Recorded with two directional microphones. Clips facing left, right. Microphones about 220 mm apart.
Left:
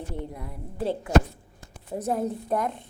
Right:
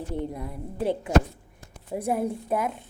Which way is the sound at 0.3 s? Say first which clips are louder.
Right 2 dB; 20° right (ahead or behind).